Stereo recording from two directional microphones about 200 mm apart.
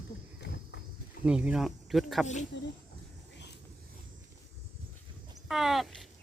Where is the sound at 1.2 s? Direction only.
5° right (ahead or behind).